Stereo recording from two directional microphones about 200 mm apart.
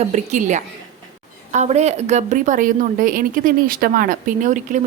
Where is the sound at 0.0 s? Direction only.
35° right (ahead or behind).